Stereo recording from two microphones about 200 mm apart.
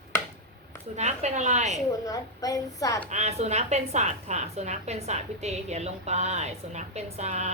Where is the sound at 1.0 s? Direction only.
35° right (ahead or behind).